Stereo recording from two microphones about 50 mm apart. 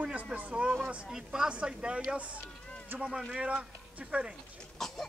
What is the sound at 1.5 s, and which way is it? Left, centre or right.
Speech, right.